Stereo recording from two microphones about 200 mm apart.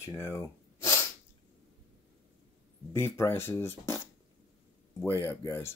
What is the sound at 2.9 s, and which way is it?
Speech, 15° left (ahead or behind).